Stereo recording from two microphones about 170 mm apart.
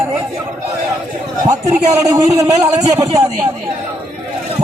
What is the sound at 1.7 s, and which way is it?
A man's voice, 20° right (ahead or behind).